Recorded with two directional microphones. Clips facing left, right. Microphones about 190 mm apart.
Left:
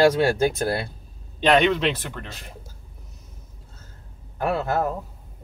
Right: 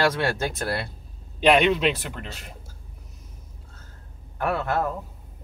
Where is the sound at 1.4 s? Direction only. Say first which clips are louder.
Even; 10° right (ahead or behind).